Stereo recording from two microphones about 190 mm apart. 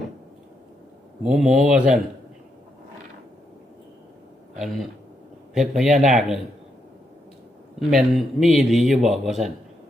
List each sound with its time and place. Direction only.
1.2 s a man's voice: 5° right (ahead or behind)
5.5 s a man's voice: centre (ahead or behind)
7.8 s a man's voice: centre (ahead or behind)